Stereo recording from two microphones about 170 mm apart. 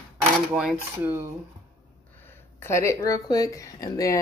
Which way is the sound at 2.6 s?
15° left (ahead or behind).